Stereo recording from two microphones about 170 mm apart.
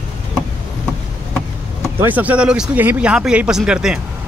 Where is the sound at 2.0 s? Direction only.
10° right (ahead or behind).